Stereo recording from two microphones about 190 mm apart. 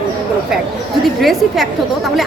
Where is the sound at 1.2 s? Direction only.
Centre (ahead or behind).